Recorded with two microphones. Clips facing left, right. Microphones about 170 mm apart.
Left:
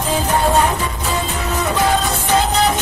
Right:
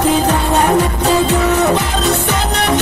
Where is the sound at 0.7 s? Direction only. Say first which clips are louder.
Right 9 dB; 75° right (ahead or behind).